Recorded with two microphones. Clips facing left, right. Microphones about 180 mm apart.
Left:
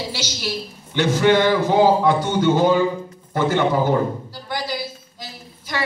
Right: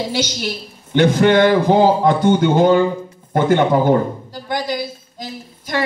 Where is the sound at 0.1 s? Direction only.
55° right (ahead or behind).